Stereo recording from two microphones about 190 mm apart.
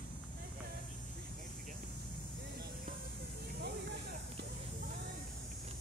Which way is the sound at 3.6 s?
60° right (ahead or behind).